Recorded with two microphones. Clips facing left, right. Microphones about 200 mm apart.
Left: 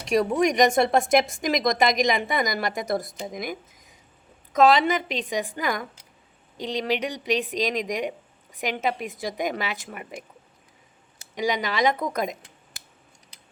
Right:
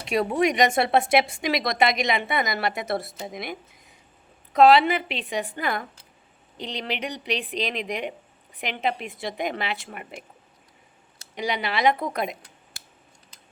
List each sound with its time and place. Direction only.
0.0 s a woman's voice: 45° left (ahead or behind)
6.7 s a woman's voice: 45° left (ahead or behind)
11.3 s a woman's voice: 45° left (ahead or behind)